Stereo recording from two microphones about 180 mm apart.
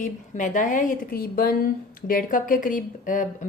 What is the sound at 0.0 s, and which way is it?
A woman's voice, 45° left (ahead or behind).